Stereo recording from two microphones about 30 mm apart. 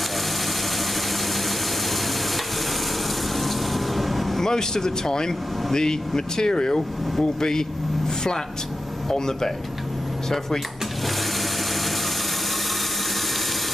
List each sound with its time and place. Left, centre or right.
3.3 s vehicle: centre
4.4 s speech: centre
9.1 s speech: centre